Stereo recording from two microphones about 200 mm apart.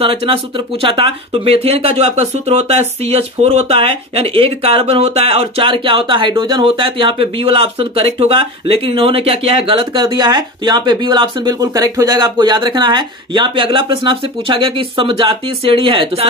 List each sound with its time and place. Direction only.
0.0 s speech: 25° right (ahead or behind)